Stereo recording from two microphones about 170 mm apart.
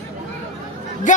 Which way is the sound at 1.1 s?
45° left (ahead or behind).